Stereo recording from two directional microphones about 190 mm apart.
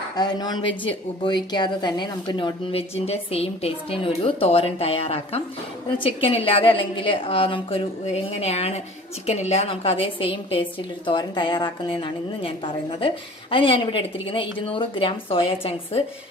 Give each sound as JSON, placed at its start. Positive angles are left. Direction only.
{"t": 0.1, "sound": "a woman's voice", "side_deg": 20}